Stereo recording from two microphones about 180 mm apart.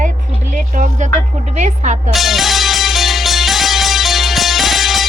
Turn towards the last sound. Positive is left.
turn(degrees=0)  # may be behind; listen again after turning